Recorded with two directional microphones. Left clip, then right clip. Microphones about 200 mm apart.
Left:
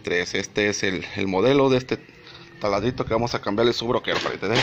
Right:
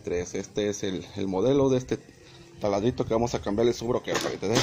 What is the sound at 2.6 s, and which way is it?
Speech, 20° right (ahead or behind).